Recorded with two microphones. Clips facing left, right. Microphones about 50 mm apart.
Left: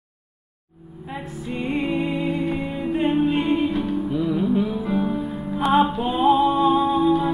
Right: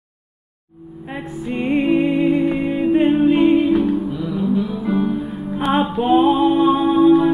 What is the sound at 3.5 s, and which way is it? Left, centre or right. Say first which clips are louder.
Music: right 7 dB; right.